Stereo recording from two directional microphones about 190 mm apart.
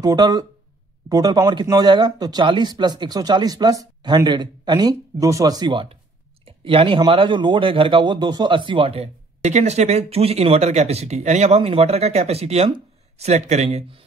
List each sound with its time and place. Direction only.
0.0 s speech: 20° right (ahead or behind)